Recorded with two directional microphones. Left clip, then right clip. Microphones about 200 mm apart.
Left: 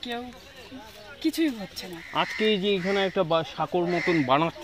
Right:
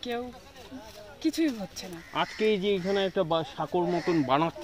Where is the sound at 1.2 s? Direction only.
25° right (ahead or behind).